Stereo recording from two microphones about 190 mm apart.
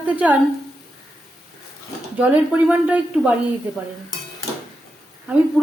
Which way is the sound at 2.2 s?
5° right (ahead or behind).